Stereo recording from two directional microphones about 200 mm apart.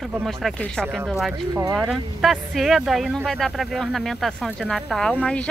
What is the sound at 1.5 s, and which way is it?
Speech, 15° right (ahead or behind).